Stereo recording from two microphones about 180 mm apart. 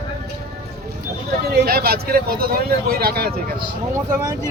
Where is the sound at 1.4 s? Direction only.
60° right (ahead or behind).